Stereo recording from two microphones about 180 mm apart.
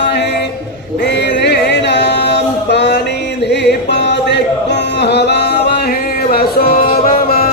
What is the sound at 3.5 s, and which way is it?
Music, 70° left (ahead or behind).